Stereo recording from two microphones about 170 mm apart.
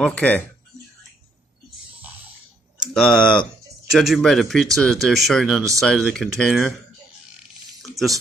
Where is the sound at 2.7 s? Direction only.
Centre (ahead or behind).